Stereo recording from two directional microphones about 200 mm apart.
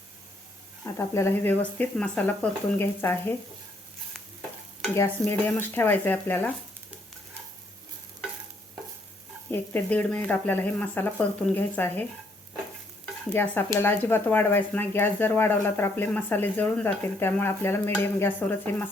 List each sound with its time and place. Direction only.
0.9 s speech: 15° left (ahead or behind)
5.3 s speech: 10° left (ahead or behind)
9.5 s speech: 10° left (ahead or behind)
13.3 s speech: 10° left (ahead or behind)